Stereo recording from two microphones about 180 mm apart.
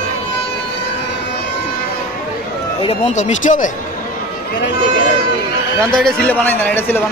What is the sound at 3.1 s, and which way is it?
Speech, 40° left (ahead or behind).